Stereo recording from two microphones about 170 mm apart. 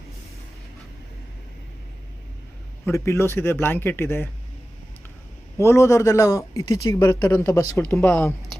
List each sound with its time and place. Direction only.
2.8 s a man's voice: 15° left (ahead or behind)
5.5 s a man's voice: 15° left (ahead or behind)